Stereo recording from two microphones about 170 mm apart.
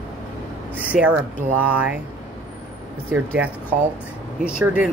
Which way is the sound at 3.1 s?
10° right (ahead or behind).